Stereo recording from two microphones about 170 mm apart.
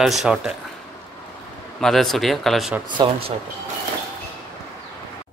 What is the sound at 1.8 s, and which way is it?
Speech, centre (ahead or behind).